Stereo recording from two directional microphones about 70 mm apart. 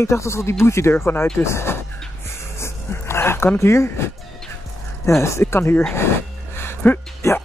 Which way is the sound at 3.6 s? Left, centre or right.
Left.